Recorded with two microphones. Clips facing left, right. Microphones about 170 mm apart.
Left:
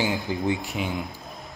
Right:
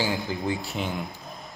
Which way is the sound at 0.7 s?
5° left (ahead or behind).